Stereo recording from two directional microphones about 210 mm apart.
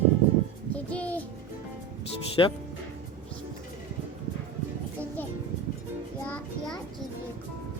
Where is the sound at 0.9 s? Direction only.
5° left (ahead or behind).